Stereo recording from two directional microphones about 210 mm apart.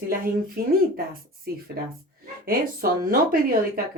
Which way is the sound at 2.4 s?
45° right (ahead or behind).